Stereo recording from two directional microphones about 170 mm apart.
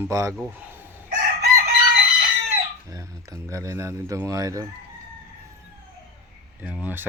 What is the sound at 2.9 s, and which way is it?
Speech, 20° right (ahead or behind).